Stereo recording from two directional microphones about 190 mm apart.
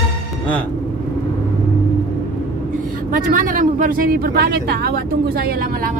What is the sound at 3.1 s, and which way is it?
Speech, 45° right (ahead or behind).